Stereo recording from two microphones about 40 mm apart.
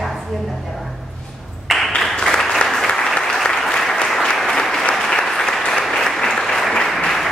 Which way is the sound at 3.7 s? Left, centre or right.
Centre.